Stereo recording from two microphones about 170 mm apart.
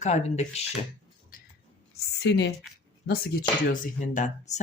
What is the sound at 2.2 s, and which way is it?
Speech, 85° left.